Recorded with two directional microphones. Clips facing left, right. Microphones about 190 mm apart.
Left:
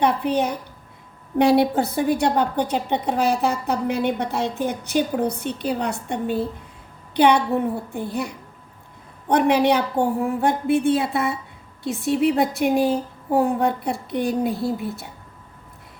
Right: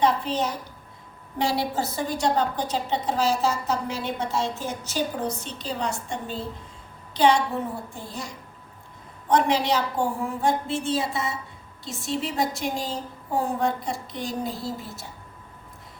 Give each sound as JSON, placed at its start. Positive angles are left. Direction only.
{"t": 0.0, "sound": "a woman's voice", "side_deg": 60}